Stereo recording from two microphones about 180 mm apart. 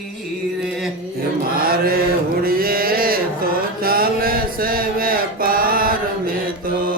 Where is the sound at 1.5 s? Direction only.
55° right (ahead or behind).